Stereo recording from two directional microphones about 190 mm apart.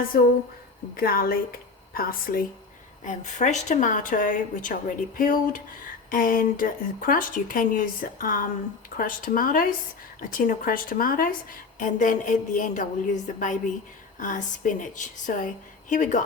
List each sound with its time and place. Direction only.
0.1 s a woman's voice: 55° left (ahead or behind)